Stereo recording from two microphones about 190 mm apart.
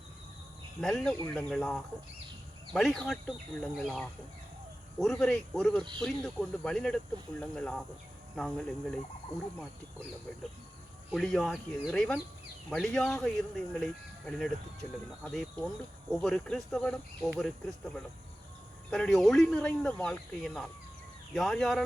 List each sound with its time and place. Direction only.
0.8 s speech: centre (ahead or behind)
5.8 s speech: 25° right (ahead or behind)
6.1 s speech: centre (ahead or behind)
11.1 s speech: centre (ahead or behind)